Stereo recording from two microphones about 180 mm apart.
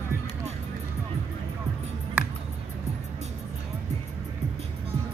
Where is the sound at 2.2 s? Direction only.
10° right (ahead or behind).